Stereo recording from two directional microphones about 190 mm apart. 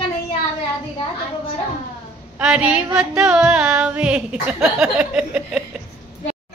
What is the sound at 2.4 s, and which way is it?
Music, 5° right (ahead or behind).